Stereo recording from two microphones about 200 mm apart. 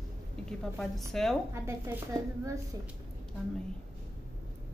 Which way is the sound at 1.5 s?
15° right (ahead or behind).